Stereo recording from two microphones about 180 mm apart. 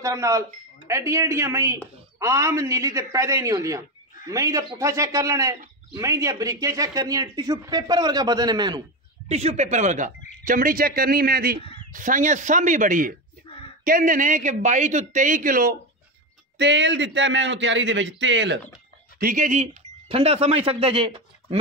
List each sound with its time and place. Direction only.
0.0 s speech: 15° right (ahead or behind)
9.3 s speech: 35° right (ahead or behind); by 11.6 s 55° right (ahead or behind)
11.9 s speech: 45° right (ahead or behind)
16.5 s a man's voice: 75° right (ahead or behind)
19.1 s speech: 50° right (ahead or behind); by 21.5 s 30° right (ahead or behind)